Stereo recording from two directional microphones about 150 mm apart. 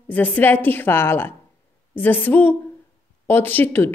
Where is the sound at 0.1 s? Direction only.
10° left (ahead or behind).